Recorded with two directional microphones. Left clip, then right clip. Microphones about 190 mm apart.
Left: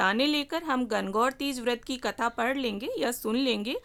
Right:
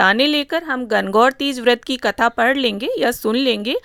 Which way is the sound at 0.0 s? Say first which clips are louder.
Right 11 dB; 30° right (ahead or behind).